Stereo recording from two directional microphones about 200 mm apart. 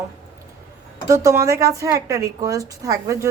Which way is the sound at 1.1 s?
15° right (ahead or behind).